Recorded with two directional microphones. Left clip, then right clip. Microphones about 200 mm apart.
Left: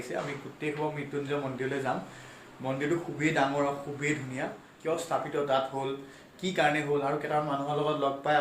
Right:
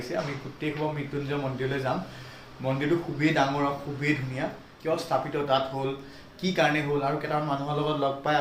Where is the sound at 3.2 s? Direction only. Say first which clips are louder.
Right 2 dB; 5° left (ahead or behind).